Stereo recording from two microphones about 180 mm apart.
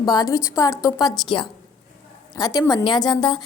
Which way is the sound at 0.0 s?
20° left (ahead or behind).